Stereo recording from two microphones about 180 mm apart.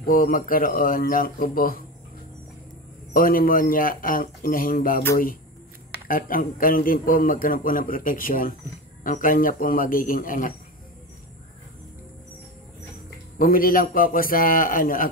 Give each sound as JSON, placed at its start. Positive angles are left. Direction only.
{"t": 0.0, "sound": "a man's voice", "side_deg": 55}
{"t": 3.1, "sound": "a man's voice", "side_deg": 55}
{"t": 6.0, "sound": "a man's voice", "side_deg": 50}
{"t": 13.4, "sound": "a man's voice", "side_deg": 50}